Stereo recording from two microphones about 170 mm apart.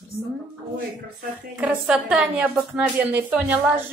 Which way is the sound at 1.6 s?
5° right (ahead or behind).